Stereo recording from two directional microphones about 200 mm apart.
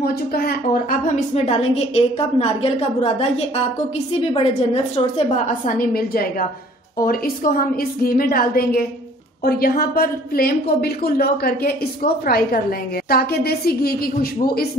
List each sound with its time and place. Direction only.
0.0 s a woman's voice: 50° left (ahead or behind); by 5.6 s 30° left (ahead or behind)
5.8 s a woman's voice: 45° left (ahead or behind)